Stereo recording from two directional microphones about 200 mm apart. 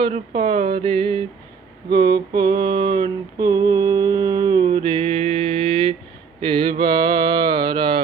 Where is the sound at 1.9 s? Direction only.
20° right (ahead or behind).